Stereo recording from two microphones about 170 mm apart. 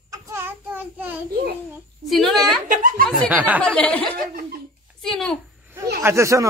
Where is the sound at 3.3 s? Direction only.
10° right (ahead or behind).